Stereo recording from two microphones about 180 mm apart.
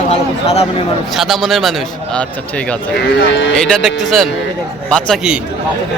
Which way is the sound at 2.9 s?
85° left.